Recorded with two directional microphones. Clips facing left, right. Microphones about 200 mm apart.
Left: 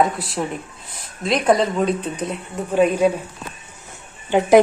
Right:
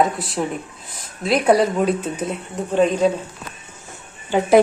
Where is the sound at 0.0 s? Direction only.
Centre (ahead or behind).